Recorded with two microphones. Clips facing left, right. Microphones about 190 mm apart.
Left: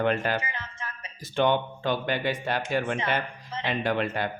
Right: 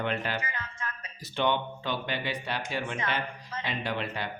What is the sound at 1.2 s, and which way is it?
Speech, 50° left (ahead or behind).